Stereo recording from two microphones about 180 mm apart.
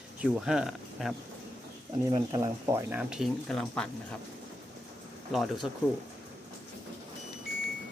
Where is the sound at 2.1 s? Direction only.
25° right (ahead or behind).